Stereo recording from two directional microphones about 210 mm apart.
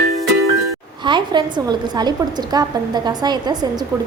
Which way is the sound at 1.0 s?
20° right (ahead or behind).